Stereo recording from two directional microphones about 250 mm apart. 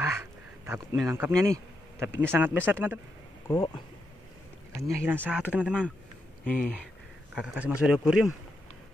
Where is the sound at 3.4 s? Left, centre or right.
Centre.